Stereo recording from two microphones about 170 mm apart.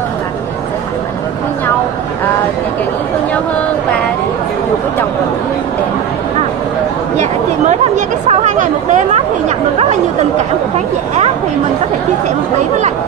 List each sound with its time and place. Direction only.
7.2 s speech: 45° right (ahead or behind)